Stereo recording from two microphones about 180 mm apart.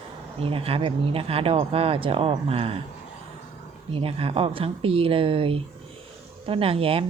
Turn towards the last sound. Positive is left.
turn(degrees=-30)  # may be behind; listen again after turning